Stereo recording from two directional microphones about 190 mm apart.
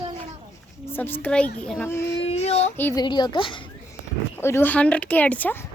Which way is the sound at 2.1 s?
35° left (ahead or behind).